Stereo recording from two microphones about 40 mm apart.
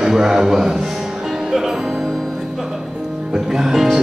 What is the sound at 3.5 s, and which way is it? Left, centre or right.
Speech, centre.